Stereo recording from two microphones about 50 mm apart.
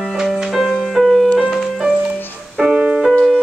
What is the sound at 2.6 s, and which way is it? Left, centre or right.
Music, centre.